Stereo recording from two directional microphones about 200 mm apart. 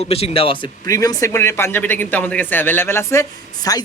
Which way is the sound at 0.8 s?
15° left (ahead or behind).